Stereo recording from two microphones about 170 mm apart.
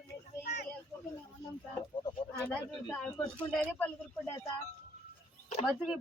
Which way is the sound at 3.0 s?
5° left (ahead or behind).